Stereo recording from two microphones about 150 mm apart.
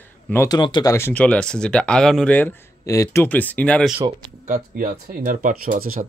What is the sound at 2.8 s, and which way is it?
Speech, 20° left (ahead or behind).